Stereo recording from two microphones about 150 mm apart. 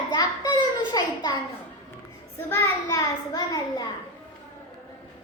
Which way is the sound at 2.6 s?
25° left (ahead or behind).